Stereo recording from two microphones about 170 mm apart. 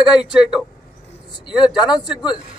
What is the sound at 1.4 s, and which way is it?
Speech, 25° left (ahead or behind).